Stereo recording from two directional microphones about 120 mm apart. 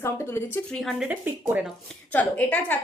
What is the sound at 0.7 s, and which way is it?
Speech, centre (ahead or behind).